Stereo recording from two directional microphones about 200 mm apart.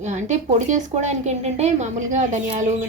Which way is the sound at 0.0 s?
35° right (ahead or behind).